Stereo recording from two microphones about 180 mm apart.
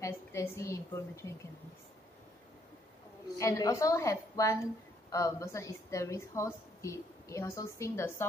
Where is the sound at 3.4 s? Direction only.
15° left (ahead or behind).